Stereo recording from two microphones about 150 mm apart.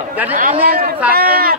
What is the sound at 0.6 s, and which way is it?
Speech, 80° right.